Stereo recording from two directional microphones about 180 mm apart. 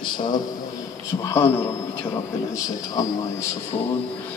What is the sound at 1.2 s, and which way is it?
A man's voice, 15° left (ahead or behind).